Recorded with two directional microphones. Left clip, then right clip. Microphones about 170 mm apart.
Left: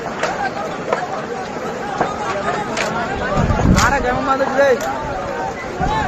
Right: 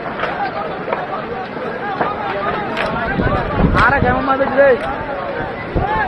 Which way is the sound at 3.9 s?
15° right (ahead or behind).